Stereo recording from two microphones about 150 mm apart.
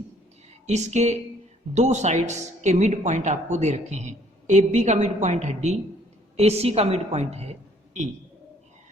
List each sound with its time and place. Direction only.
0.7 s a woman's voice: 50° right (ahead or behind)